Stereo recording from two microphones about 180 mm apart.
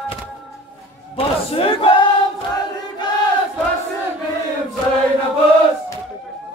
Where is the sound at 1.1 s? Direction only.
30° left (ahead or behind).